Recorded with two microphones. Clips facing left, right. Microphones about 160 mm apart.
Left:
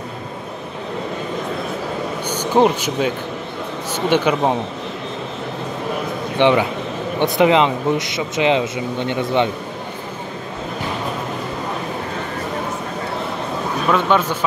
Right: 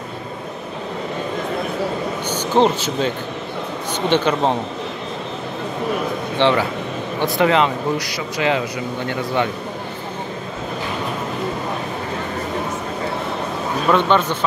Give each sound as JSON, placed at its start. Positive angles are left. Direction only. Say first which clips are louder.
{"t": 2.2, "sound": "a sound", "louder": "left 1 dB", "side_deg": 10}
{"t": 4.1, "sound": "speech", "louder": "left 1 dB", "side_deg": 10}
{"t": 6.3, "sound": "a man's voice", "louder": "left 3 dB", "side_deg": 15}
{"t": 13.8, "sound": "speech", "louder": "right 1 dB", "side_deg": 5}